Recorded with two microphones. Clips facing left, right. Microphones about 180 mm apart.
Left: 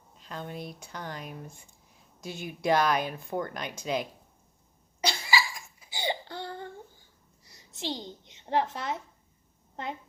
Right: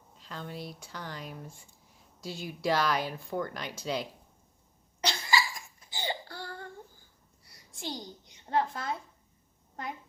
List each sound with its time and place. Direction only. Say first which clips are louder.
0.2 s speech: left 2 dB; 20° left (ahead or behind)
4.9 s cough: left 1 dB; 10° left (ahead or behind)
7.5 s a child's voice: left 4 dB; 25° left (ahead or behind)